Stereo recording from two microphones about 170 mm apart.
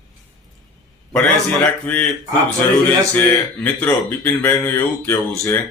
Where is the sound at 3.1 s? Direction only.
10° left (ahead or behind).